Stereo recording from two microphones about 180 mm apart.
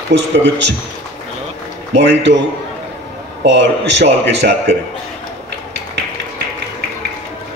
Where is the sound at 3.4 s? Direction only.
75° right (ahead or behind).